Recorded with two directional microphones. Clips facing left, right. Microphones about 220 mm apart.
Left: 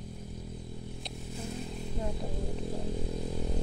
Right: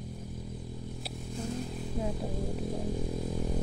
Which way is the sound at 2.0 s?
5° right (ahead or behind).